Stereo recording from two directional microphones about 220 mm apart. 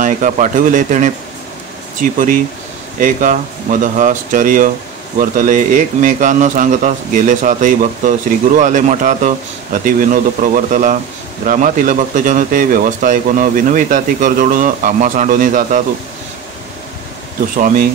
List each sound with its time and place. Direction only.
0.0 s speech: 35° right (ahead or behind)